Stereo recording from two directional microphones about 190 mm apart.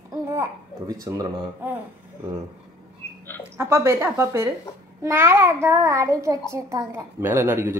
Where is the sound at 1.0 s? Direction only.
20° right (ahead or behind).